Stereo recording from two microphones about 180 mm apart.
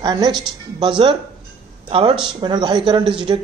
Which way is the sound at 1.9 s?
30° right (ahead or behind).